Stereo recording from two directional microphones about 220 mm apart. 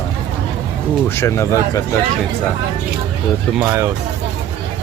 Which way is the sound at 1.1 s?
10° left (ahead or behind).